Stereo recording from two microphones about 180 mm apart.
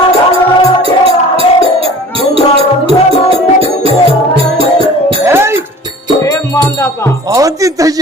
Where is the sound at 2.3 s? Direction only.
30° right (ahead or behind).